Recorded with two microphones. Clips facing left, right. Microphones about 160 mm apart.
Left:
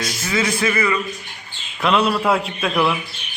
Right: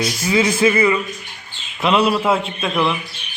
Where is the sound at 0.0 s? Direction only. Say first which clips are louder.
Right 4 dB; 15° right (ahead or behind).